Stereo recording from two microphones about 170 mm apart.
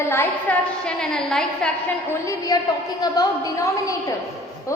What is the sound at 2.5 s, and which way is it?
A woman's voice, 20° left (ahead or behind).